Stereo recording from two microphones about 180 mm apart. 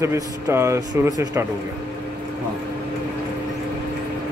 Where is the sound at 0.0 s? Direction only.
15° right (ahead or behind).